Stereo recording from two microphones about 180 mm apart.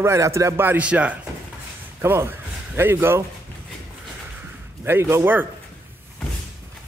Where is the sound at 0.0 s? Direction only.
15° right (ahead or behind).